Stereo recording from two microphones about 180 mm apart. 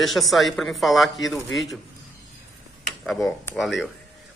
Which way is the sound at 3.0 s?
Centre (ahead or behind).